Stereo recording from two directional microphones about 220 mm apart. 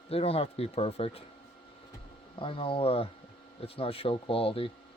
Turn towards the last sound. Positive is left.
turn(degrees=25)  # may be behind; listen again after turning